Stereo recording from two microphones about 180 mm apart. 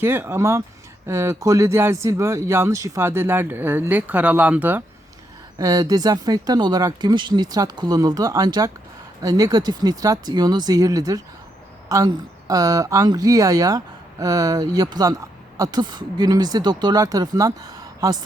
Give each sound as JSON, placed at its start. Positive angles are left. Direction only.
{"t": 0.0, "sound": "speech", "side_deg": -15}
{"t": 5.5, "sound": "speech", "side_deg": -20}